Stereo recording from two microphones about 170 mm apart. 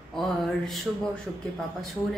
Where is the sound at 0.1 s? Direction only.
Centre (ahead or behind).